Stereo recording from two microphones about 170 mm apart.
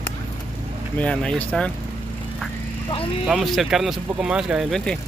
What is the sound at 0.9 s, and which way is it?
Speech, 10° left (ahead or behind).